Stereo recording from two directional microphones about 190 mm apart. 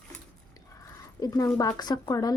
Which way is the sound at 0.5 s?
20° left (ahead or behind).